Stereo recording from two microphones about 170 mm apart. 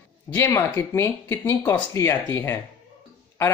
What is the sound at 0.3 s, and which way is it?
Speech, 15° left (ahead or behind).